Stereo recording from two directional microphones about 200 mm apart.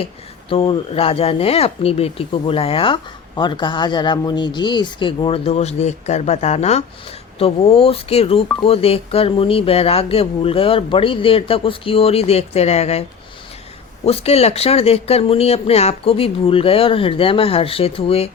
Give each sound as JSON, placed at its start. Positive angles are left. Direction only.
{"t": 0.5, "sound": "speech", "side_deg": 25}